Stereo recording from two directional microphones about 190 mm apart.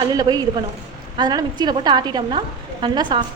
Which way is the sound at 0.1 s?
20° right (ahead or behind).